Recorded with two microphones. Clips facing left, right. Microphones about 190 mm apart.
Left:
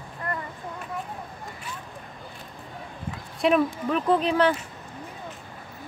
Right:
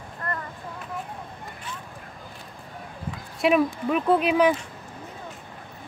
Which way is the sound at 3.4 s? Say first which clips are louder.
Right 1 dB; 5° right (ahead or behind).